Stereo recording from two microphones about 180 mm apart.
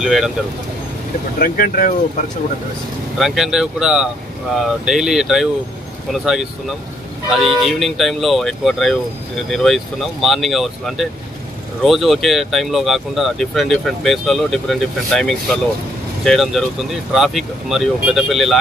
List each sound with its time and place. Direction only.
0.0 s speech: centre (ahead or behind)
1.4 s speech: 50° left (ahead or behind)
3.2 s speech: centre (ahead or behind)
7.6 s speech: centre (ahead or behind)